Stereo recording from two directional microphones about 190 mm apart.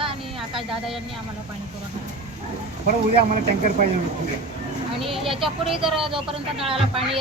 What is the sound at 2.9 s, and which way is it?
Speech, 45° right (ahead or behind).